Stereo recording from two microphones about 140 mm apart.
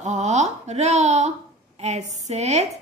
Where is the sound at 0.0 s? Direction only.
55° right (ahead or behind).